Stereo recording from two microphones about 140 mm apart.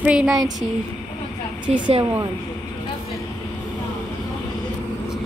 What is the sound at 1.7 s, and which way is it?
Speech, 50° right (ahead or behind).